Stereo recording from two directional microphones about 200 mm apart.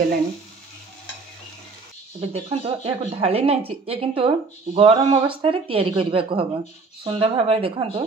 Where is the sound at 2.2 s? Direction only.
30° right (ahead or behind).